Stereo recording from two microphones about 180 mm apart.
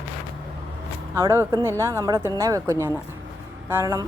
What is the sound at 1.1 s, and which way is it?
Speech, 15° right (ahead or behind).